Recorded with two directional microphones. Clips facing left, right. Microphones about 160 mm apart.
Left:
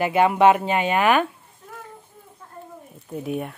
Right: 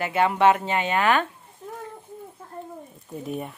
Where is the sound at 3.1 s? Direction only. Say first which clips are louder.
Left 4 dB; 5° left (ahead or behind).